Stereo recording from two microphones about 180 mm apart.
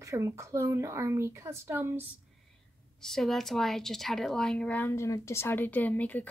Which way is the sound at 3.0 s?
Centre (ahead or behind).